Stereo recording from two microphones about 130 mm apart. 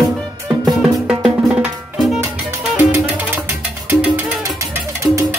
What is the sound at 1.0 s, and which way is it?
Music, 10° right (ahead or behind).